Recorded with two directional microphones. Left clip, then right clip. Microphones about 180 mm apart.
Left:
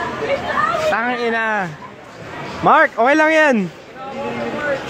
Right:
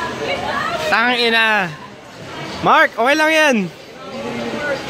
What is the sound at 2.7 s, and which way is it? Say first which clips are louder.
Speech: even; 10° left (ahead or behind).